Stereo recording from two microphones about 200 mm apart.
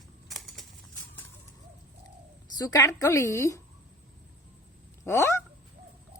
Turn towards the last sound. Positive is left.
turn(degrees=15)  # may be behind; listen again after turning